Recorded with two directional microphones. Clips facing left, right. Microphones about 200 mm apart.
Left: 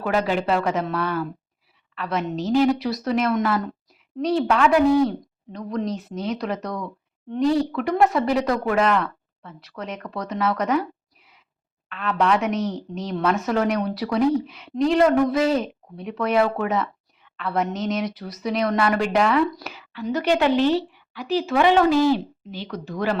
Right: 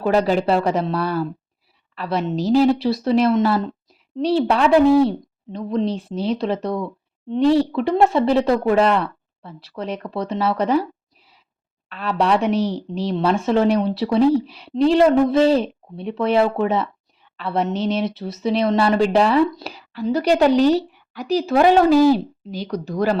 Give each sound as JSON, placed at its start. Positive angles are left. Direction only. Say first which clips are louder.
{"t": 0.0, "sound": "a woman's voice", "louder": "right 5 dB", "side_deg": -35}
{"t": 11.9, "sound": "a woman's voice", "louder": "right 2 dB", "side_deg": -35}